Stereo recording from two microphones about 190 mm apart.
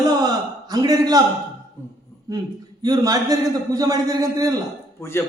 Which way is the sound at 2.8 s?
20° right (ahead or behind).